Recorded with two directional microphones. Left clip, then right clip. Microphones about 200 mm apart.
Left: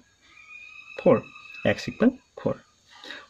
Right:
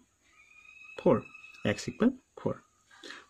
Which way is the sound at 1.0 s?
35° right (ahead or behind).